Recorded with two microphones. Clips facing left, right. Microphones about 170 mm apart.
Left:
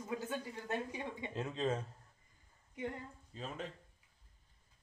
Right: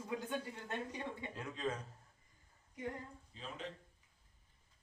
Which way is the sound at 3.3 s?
45° left (ahead or behind).